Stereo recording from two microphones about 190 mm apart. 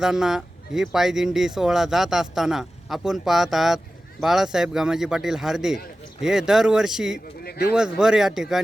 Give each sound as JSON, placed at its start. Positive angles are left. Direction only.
{"t": 0.0, "sound": "speech", "side_deg": 0}
{"t": 7.4, "sound": "a sound", "side_deg": 55}
{"t": 7.8, "sound": "speech", "side_deg": -5}